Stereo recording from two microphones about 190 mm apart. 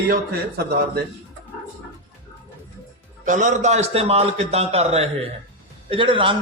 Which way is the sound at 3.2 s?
40° right (ahead or behind).